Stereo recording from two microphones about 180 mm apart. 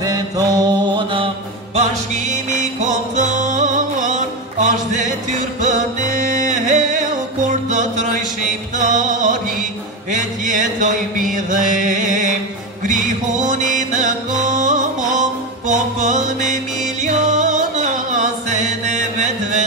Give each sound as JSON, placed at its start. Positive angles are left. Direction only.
{"t": 0.0, "sound": "mantra", "side_deg": -20}
{"t": 1.8, "sound": "music", "side_deg": -40}